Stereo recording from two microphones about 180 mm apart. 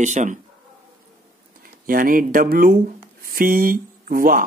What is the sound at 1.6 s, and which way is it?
Speech, 50° right (ahead or behind).